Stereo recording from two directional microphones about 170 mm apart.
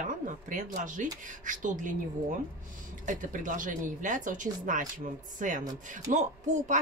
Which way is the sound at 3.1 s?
50° right (ahead or behind).